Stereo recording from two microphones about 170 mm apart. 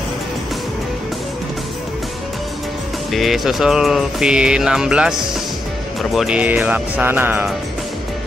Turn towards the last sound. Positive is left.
turn(degrees=-10)  # may be behind; listen again after turning